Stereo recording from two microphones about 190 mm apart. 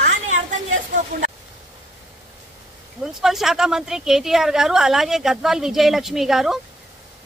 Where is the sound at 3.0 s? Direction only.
Centre (ahead or behind).